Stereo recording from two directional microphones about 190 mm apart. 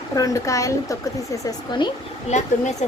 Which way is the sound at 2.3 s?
40° left (ahead or behind).